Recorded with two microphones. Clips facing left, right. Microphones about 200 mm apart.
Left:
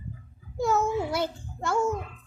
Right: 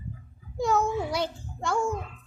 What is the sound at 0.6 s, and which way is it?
A woman's voice, centre (ahead or behind).